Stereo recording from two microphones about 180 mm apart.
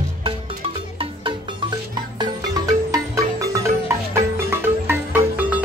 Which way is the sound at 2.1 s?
20° right (ahead or behind).